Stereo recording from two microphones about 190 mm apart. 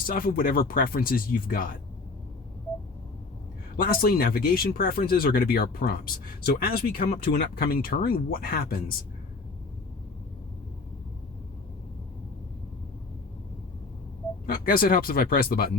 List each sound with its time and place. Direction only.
0.0 s speech: 50° left (ahead or behind)
3.8 s speech: 50° left (ahead or behind)
14.4 s speech: 50° left (ahead or behind)